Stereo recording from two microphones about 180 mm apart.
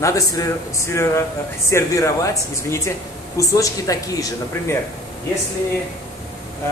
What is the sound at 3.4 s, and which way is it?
Speech, 20° left (ahead or behind).